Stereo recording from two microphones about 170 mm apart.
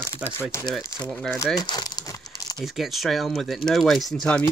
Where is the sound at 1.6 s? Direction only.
25° left (ahead or behind).